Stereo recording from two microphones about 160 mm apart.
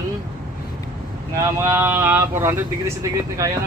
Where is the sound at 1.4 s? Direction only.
15° right (ahead or behind).